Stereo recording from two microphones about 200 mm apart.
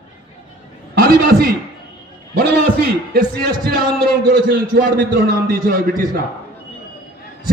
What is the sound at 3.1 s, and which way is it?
A man's voice, 50° right (ahead or behind).